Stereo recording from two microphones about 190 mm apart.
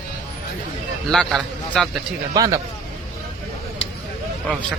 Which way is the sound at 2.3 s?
20° right (ahead or behind).